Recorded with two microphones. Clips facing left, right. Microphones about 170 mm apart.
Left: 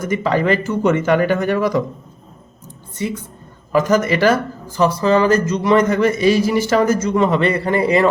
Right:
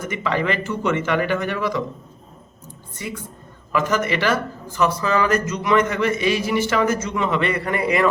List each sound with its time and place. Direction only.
0.0 s speech: 40° left (ahead or behind)
3.0 s a woman's voice: 25° left (ahead or behind)
3.7 s speech: 40° left (ahead or behind)